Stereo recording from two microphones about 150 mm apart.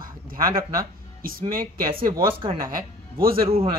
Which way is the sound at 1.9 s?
35° right (ahead or behind).